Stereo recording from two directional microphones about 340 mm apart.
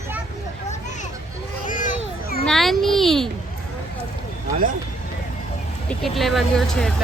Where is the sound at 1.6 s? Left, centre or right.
Left.